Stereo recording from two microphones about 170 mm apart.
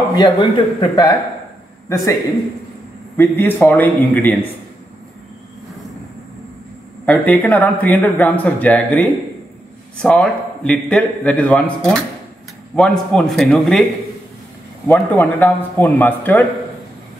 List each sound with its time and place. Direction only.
0.1 s a man's voice: 25° left (ahead or behind)
3.2 s speech: 10° left (ahead or behind)
7.1 s a man's voice: 10° left (ahead or behind)
14.9 s speech: 10° left (ahead or behind)